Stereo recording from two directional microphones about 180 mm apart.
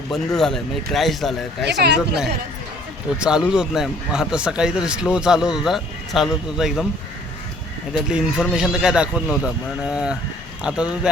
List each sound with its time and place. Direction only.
0.1 s speech: centre (ahead or behind)
1.6 s speech: 70° right (ahead or behind)
3.2 s speech: 5° right (ahead or behind)
7.9 s speech: 5° right (ahead or behind)